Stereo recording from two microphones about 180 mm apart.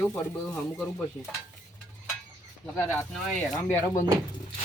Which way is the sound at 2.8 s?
15° left (ahead or behind).